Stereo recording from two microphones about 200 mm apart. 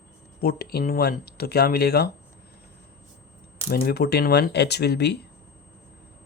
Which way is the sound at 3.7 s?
50° left (ahead or behind).